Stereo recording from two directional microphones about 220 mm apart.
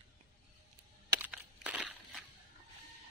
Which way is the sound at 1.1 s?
5° right (ahead or behind).